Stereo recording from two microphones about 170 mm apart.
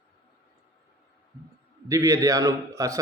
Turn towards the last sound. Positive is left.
turn(degrees=-20)  # may be behind; listen again after turning